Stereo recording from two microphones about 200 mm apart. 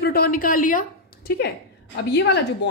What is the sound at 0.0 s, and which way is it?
A woman's voice, 50° left (ahead or behind).